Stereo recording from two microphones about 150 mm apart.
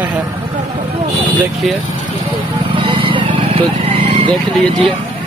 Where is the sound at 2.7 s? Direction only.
35° right (ahead or behind).